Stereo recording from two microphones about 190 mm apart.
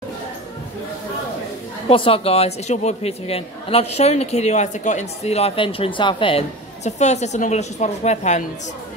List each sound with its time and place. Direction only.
1.9 s a man's voice: 30° left (ahead or behind)